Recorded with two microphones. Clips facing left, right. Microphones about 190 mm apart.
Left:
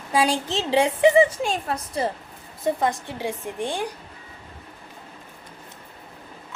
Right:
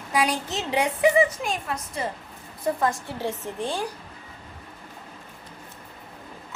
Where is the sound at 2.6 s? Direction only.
20° left (ahead or behind).